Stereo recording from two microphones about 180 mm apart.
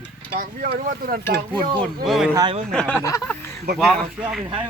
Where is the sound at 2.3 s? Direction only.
20° right (ahead or behind).